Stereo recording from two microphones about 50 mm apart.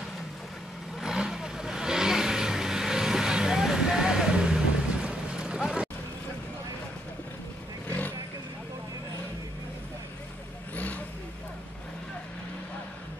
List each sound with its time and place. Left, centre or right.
1.0 s vehicle: centre